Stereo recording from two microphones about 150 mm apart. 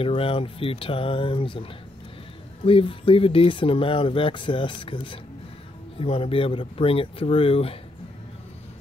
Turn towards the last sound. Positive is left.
turn(degrees=40)  # may be behind; listen again after turning